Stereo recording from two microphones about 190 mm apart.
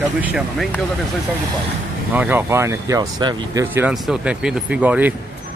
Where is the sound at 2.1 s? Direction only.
10° right (ahead or behind).